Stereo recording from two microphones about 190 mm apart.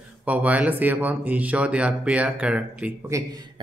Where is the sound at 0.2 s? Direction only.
5° right (ahead or behind).